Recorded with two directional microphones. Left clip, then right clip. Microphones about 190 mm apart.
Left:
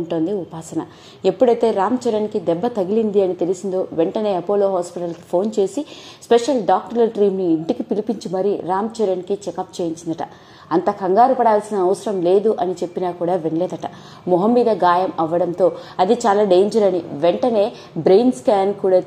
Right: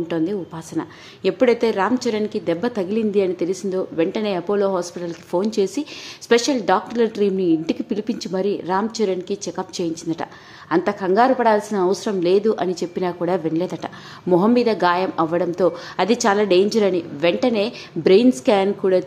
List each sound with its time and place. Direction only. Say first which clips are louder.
0.1 s a woman's voice: left 4 dB; centre (ahead or behind)
18.5 s a woman's voice: left 3 dB; 35° right (ahead or behind)